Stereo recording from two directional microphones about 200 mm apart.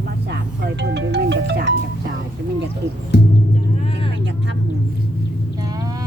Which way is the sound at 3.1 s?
60° left (ahead or behind).